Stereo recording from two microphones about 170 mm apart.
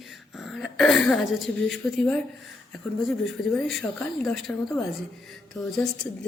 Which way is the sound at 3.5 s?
5° left (ahead or behind).